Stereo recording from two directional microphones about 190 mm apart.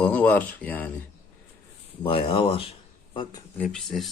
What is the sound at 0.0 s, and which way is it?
Speech, 5° left (ahead or behind).